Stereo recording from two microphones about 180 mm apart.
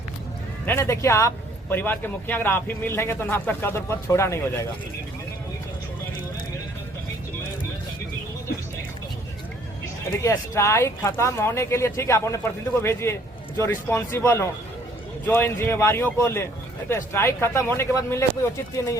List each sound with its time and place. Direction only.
0.6 s speech: 10° left (ahead or behind)
10.1 s speech: 15° left (ahead or behind)